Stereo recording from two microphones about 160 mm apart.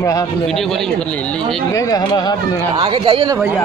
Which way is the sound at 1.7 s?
25° left (ahead or behind).